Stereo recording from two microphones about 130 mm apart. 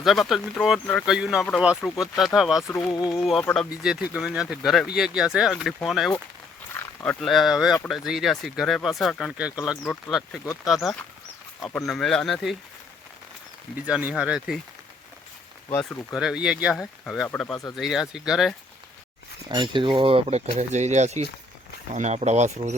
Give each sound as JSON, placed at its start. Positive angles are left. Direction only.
{"t": 0.0, "sound": "speech", "side_deg": 0}
{"t": 13.7, "sound": "speech", "side_deg": -10}
{"t": 16.1, "sound": "speech", "side_deg": -5}
{"t": 19.5, "sound": "speech", "side_deg": -35}